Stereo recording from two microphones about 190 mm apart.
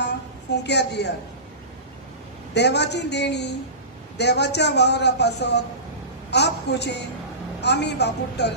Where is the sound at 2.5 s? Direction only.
65° left (ahead or behind).